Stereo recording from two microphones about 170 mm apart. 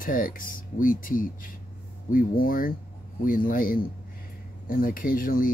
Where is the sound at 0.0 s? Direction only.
55° left (ahead or behind).